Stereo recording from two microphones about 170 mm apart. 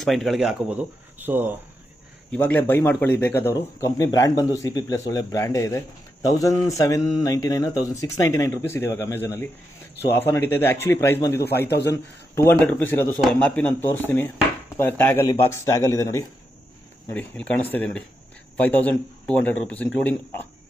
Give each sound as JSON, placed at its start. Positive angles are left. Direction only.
{"t": 0.0, "sound": "speech", "side_deg": 0}
{"t": 2.3, "sound": "speech", "side_deg": 10}